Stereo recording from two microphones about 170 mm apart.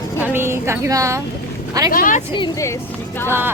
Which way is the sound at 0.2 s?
15° right (ahead or behind).